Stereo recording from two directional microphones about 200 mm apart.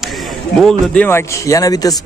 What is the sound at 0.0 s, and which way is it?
Speech, centre (ahead or behind).